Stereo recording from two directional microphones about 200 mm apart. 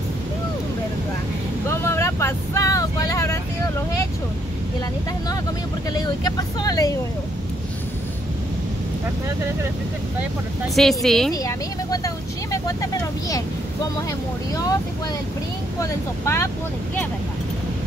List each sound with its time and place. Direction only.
1.7 s vehicle: 15° left (ahead or behind)
5.9 s speech: 20° left (ahead or behind)
10.6 s speech: centre (ahead or behind)
11.3 s speech: 15° left (ahead or behind)
15.8 s speech: 15° left (ahead or behind)